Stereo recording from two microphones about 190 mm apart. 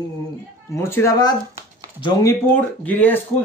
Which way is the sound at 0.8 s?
15° left (ahead or behind).